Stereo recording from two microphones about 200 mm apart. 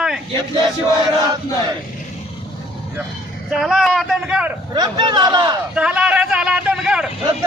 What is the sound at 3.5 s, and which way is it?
Speech, centre (ahead or behind).